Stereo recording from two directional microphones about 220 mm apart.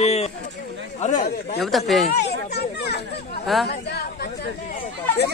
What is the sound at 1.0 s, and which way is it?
Speech, 30° left (ahead or behind).